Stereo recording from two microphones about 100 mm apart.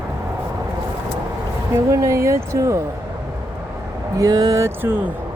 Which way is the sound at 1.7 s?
30° right (ahead or behind).